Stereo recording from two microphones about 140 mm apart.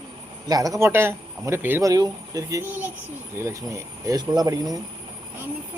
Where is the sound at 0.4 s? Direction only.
25° right (ahead or behind).